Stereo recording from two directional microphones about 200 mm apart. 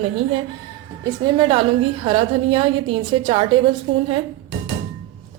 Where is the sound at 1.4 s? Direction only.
25° right (ahead or behind).